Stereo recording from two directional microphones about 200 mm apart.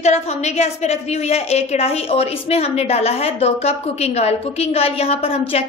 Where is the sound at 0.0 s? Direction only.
35° left (ahead or behind).